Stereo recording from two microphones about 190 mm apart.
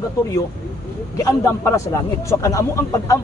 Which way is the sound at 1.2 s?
15° left (ahead or behind).